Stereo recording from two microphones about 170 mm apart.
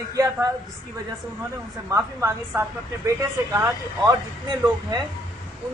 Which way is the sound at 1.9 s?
20° right (ahead or behind).